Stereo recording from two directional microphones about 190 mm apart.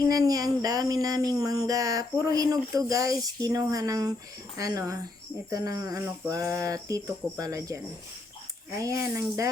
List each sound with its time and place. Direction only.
0.0 s a sound: 20° right (ahead or behind)
2.2 s speech: 20° right (ahead or behind)
8.8 s speech: 15° right (ahead or behind)